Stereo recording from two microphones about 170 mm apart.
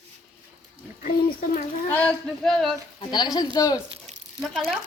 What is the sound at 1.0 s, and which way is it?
Speech, 50° left (ahead or behind).